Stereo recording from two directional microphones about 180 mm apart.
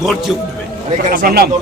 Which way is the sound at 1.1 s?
55° right (ahead or behind).